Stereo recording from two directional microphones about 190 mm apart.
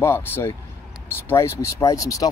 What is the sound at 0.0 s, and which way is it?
Speech, 10° left (ahead or behind).